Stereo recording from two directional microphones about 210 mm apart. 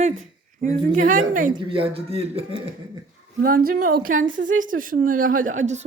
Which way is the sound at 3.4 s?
45° right (ahead or behind).